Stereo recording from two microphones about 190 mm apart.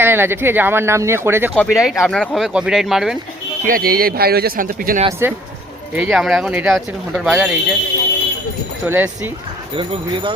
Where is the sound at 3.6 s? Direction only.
50° right (ahead or behind).